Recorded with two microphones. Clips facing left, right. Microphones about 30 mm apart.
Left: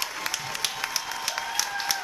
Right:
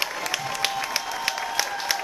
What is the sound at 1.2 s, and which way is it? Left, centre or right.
Applause, right.